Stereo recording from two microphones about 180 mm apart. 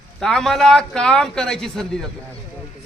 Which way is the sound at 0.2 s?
5° left (ahead or behind).